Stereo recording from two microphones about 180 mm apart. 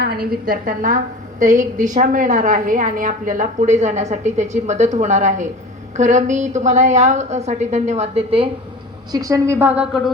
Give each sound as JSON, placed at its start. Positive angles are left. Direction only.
{"t": 0.0, "sound": "a woman's voice", "side_deg": -60}
{"t": 9.1, "sound": "a woman's voice", "side_deg": -20}